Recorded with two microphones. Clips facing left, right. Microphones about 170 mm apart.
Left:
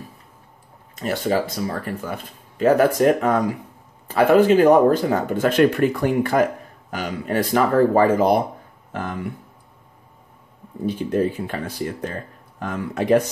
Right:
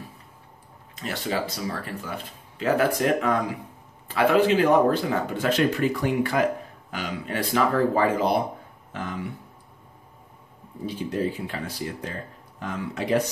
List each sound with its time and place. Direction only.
0.9 s speech: 45° left (ahead or behind)
10.9 s speech: 50° left (ahead or behind)